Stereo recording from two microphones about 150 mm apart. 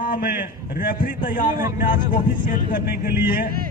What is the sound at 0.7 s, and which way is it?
A man's voice, 65° left (ahead or behind).